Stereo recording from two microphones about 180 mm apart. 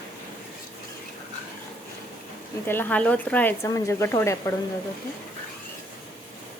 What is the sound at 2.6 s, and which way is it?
Speech, 10° left (ahead or behind).